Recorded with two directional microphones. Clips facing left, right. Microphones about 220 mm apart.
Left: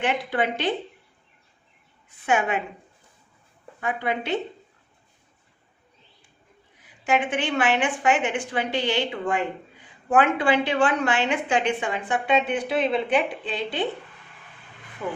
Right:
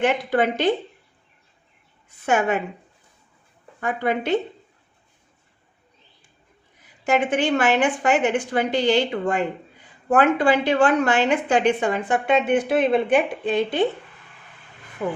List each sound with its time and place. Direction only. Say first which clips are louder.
0.0 s a woman's voice: right 5 dB; 45° right (ahead or behind)
2.2 s a woman's voice: right 3 dB; 45° right (ahead or behind)
3.8 s a woman's voice: right 4 dB; 45° right (ahead or behind)
7.0 s a woman's voice: right 4 dB; 40° right (ahead or behind)